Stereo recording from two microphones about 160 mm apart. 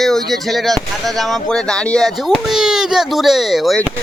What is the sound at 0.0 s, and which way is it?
Speech, centre (ahead or behind).